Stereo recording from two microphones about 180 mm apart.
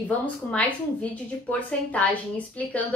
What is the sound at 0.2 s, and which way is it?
Speech, 5° left (ahead or behind).